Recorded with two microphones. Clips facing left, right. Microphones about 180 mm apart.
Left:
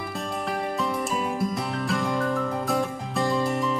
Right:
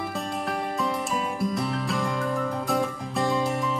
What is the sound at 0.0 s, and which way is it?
Music, centre (ahead or behind).